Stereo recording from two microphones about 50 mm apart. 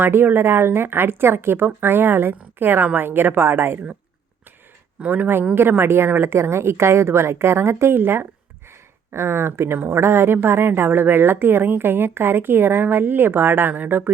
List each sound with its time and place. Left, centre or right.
0.0 s a woman's voice: right
4.9 s speech: right
5.5 s a woman's voice: right
7.9 s a woman's voice: right